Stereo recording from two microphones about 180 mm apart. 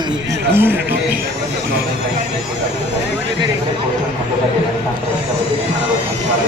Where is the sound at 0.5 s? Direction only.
10° right (ahead or behind).